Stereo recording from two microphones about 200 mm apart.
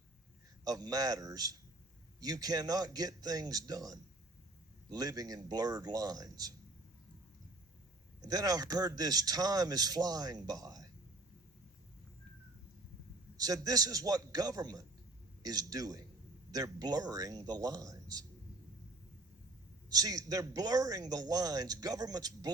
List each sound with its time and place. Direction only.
0.6 s a man's voice: 20° right (ahead or behind)
8.2 s a man's voice: 20° right (ahead or behind)
13.3 s a man's voice: 20° right (ahead or behind)
19.9 s a man's voice: 20° right (ahead or behind)